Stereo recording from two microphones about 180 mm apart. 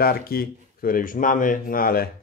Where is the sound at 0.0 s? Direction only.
55° left (ahead or behind).